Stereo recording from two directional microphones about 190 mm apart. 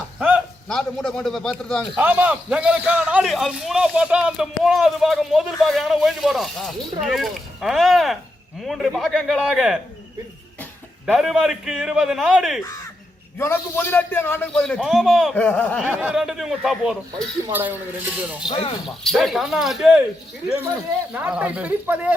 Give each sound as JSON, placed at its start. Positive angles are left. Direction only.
{"t": 0.2, "sound": "a man's voice", "side_deg": -5}
{"t": 2.0, "sound": "a man's voice", "side_deg": -10}
{"t": 11.0, "sound": "a man's voice", "side_deg": 0}
{"t": 13.4, "sound": "a man's voice", "side_deg": 15}
{"t": 15.8, "sound": "a man's voice", "side_deg": -10}
{"t": 18.4, "sound": "speech", "side_deg": 30}
{"t": 18.9, "sound": "a man's voice", "side_deg": 0}
{"t": 21.1, "sound": "speech", "side_deg": -5}